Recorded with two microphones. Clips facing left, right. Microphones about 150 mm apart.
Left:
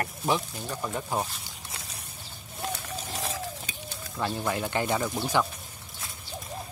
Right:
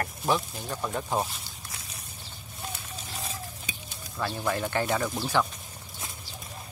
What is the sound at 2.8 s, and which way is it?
Bird, 85° left.